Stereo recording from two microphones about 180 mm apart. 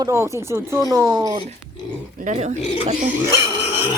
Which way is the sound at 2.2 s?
40° right (ahead or behind).